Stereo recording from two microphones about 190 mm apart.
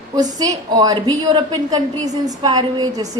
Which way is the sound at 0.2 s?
20° right (ahead or behind).